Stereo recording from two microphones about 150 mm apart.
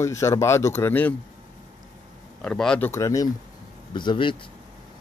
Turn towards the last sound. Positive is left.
turn(degrees=30)  # may be behind; listen again after turning